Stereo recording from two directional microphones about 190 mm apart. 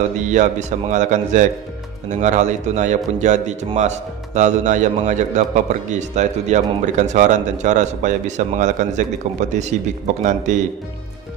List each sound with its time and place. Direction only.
0.2 s speech: 40° right (ahead or behind)